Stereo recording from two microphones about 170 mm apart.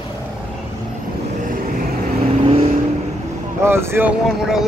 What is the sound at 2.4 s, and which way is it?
Vehicle, 35° right (ahead or behind).